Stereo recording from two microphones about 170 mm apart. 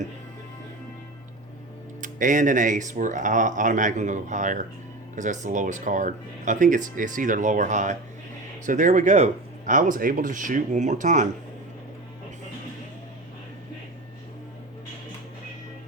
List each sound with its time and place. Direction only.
2.0 s speech: 50° right (ahead or behind)